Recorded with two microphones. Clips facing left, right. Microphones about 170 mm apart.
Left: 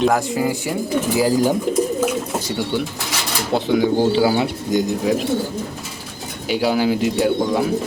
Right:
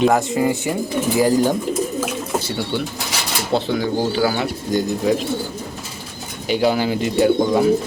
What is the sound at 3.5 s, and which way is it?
Speech, 15° left (ahead or behind).